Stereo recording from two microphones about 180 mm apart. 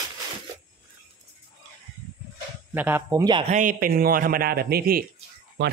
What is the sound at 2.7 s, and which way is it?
Speech, 10° right (ahead or behind).